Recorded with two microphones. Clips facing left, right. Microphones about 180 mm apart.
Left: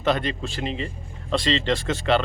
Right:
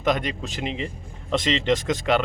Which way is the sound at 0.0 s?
15° right (ahead or behind).